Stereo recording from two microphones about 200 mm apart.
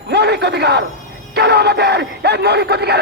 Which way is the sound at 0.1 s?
55° right (ahead or behind).